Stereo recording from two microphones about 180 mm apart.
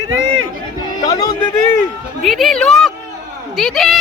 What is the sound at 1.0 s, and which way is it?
Speech, 20° left (ahead or behind).